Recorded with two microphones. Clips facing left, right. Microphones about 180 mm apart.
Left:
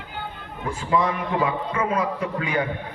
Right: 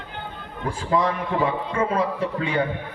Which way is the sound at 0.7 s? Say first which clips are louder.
Even; 35° right (ahead or behind).